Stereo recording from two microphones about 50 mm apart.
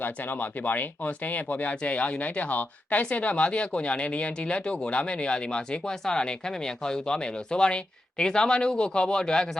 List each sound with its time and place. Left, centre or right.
0.0 s speech: left; by 9.5 s centre